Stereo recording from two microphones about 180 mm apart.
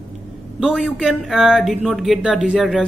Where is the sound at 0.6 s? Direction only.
5° right (ahead or behind).